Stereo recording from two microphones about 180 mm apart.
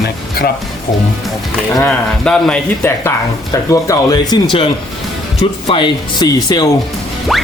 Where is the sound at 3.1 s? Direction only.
15° left (ahead or behind).